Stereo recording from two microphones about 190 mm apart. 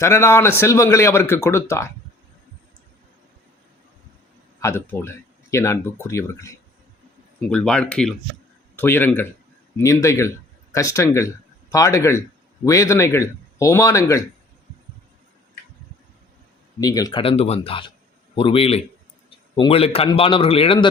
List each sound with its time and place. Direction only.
0.0 s speech: 15° left (ahead or behind)
4.6 s speech: 15° left (ahead or behind)
7.5 s speech: 5° left (ahead or behind)
16.8 s a man's voice: 20° left (ahead or behind)